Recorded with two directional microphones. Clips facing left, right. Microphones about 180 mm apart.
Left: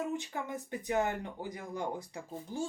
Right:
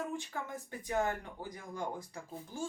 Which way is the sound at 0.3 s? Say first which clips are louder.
Left 4 dB; 20° left (ahead or behind).